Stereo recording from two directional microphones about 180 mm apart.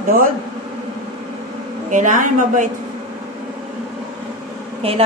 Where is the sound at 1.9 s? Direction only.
45° right (ahead or behind).